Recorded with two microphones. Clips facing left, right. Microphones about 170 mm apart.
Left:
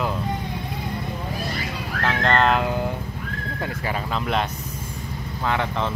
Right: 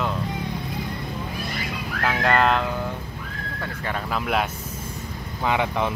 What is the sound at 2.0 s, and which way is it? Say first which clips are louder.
Speech: even; 5° right (ahead or behind).